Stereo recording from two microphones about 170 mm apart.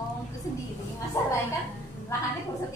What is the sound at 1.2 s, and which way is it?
Speech, 15° left (ahead or behind).